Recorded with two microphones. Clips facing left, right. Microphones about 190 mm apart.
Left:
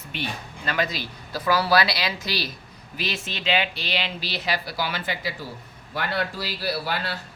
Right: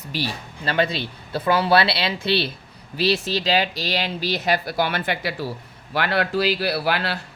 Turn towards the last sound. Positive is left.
turn(degrees=-75)  # may be behind; listen again after turning